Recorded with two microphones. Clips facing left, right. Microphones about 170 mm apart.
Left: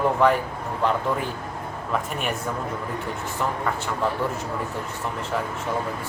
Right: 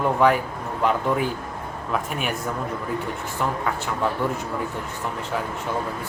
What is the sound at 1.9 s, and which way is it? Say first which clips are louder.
Speech: even; centre (ahead or behind).